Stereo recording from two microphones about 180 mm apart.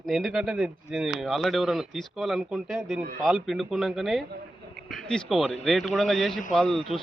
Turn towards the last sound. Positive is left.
turn(degrees=5)  # may be behind; listen again after turning